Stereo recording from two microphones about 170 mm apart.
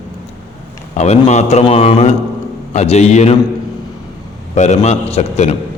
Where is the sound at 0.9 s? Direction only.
45° left (ahead or behind).